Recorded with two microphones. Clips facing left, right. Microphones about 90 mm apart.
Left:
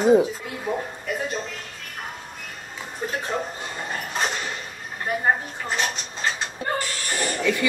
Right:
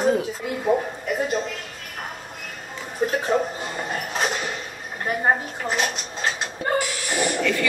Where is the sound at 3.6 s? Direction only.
5° right (ahead or behind).